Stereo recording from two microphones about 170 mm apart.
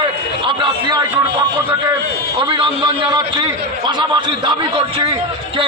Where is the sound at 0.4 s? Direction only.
30° right (ahead or behind).